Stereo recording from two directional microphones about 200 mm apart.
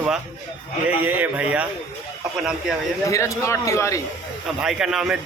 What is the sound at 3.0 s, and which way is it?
Speech, 15° left (ahead or behind).